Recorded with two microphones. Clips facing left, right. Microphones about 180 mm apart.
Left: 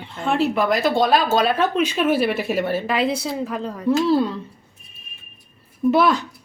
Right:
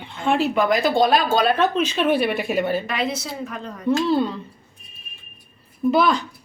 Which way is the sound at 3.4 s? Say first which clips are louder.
Left 5 dB; 30° left (ahead or behind).